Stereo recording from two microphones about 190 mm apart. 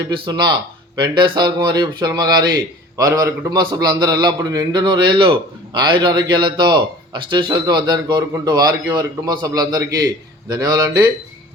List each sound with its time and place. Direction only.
0.1 s speech: 25° right (ahead or behind)